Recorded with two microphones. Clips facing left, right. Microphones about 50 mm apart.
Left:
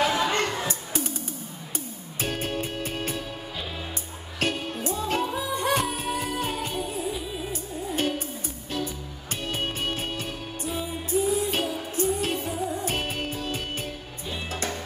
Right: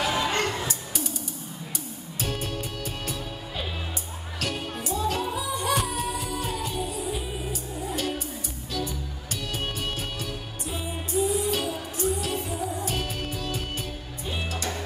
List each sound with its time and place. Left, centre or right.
0.0 s a sound: left
0.7 s music: left
2.1 s music: left
4.4 s music: left
8.7 s music: left